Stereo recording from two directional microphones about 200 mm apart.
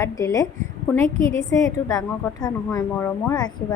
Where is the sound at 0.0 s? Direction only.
15° left (ahead or behind).